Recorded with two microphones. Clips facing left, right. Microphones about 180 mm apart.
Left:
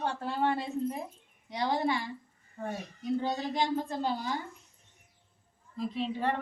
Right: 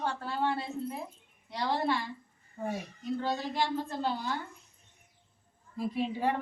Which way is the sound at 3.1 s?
15° left (ahead or behind).